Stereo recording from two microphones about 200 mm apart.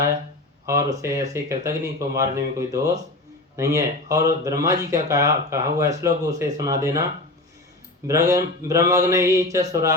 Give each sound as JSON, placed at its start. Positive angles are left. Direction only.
{"t": 0.6, "sound": "speech", "side_deg": -15}
{"t": 8.0, "sound": "speech", "side_deg": -15}